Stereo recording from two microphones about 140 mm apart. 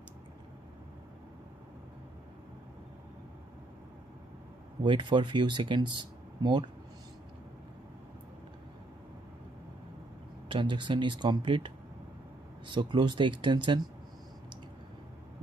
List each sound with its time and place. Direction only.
4.8 s speech: 35° right (ahead or behind)
10.5 s speech: 35° right (ahead or behind)